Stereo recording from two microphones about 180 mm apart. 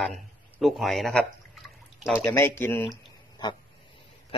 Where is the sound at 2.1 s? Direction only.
15° left (ahead or behind).